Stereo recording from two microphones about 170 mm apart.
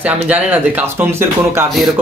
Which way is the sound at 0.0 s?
10° right (ahead or behind).